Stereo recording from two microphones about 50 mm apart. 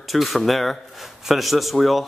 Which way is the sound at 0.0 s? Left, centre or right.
Centre.